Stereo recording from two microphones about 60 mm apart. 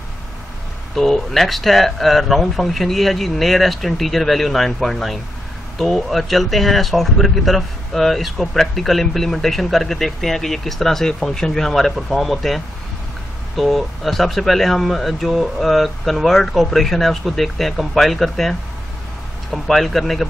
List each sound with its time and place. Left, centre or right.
0.9 s speech: centre